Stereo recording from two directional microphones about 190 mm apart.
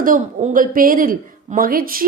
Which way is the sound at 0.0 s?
45° right (ahead or behind).